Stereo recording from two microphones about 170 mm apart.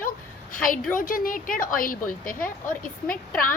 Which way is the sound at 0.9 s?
55° left (ahead or behind).